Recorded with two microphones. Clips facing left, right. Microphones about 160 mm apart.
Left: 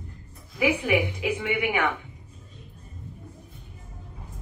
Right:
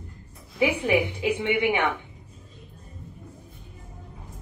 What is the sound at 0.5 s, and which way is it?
A woman's voice, 30° right (ahead or behind).